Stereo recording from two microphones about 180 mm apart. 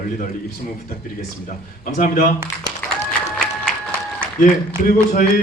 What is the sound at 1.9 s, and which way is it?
Speech, 45° left (ahead or behind).